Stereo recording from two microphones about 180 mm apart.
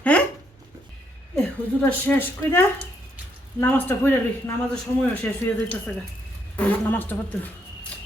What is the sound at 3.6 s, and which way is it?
Speech, 10° left (ahead or behind).